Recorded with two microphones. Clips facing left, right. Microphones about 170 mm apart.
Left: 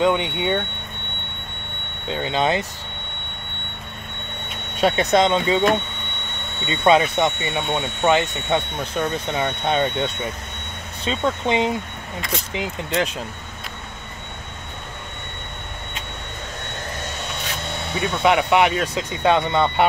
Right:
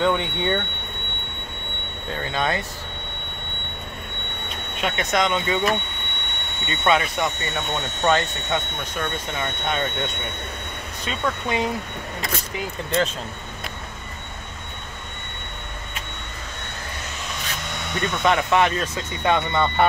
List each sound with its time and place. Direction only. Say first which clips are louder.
0.0 s speech: left 2 dB; 15° left (ahead or behind)
2.2 s speech: left 4 dB; 20° left (ahead or behind)
4.7 s speech: left 6 dB; 35° left (ahead or behind)
11.1 s speech: left 4 dB; 25° left (ahead or behind)
18.2 s speech: left 3 dB; 15° left (ahead or behind)